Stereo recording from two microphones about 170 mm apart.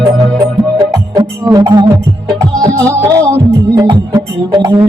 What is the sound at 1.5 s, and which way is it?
Music, 20° right (ahead or behind).